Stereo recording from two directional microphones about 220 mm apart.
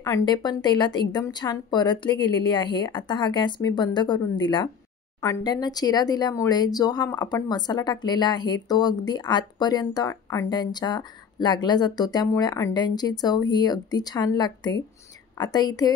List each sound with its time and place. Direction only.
0.0 s speech: 15° left (ahead or behind)